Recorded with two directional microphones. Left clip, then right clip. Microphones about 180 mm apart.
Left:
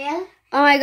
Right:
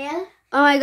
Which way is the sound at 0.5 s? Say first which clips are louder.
Left 1 dB; 5° right (ahead or behind).